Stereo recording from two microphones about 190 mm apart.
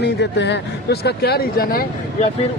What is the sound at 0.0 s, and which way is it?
A man's voice, 65° left (ahead or behind).